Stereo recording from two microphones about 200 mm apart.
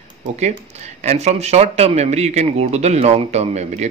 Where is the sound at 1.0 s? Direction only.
35° right (ahead or behind).